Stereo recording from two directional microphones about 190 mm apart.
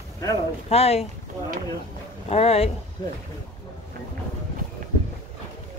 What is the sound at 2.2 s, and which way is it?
Speech, 30° left (ahead or behind).